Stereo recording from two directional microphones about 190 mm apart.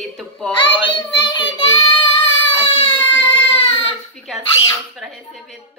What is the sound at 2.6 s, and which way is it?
Baby cry, 30° left (ahead or behind).